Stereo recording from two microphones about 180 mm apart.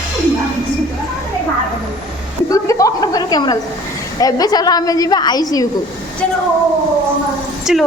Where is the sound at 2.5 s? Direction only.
20° left (ahead or behind).